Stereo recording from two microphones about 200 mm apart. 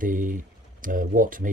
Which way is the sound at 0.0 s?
40° right (ahead or behind).